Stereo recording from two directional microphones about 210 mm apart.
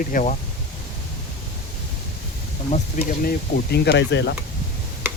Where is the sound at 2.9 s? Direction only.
45° left (ahead or behind).